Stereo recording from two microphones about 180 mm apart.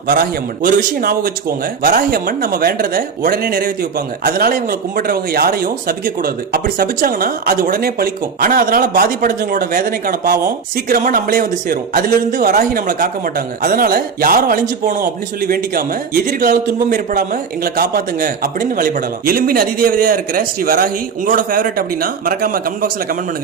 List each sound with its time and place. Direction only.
0.1 s a man's voice: 55° right (ahead or behind)